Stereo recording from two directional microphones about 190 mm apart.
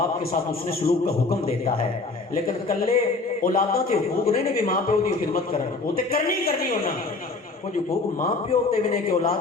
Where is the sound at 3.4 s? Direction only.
50° left (ahead or behind).